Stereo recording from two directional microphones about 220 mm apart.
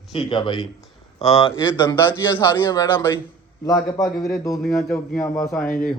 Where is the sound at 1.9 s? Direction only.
10° left (ahead or behind).